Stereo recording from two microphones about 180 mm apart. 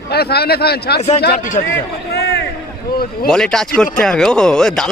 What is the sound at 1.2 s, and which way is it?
Speech, 50° left (ahead or behind).